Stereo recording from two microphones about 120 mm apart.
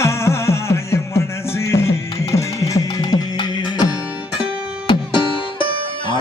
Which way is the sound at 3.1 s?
35° left (ahead or behind).